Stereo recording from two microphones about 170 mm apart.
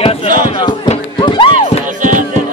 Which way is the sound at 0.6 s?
30° left (ahead or behind).